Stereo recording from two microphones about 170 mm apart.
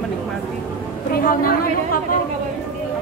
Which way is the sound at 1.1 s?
55° left (ahead or behind).